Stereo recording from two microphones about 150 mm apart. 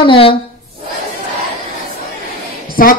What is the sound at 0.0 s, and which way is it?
Speech, 35° left (ahead or behind).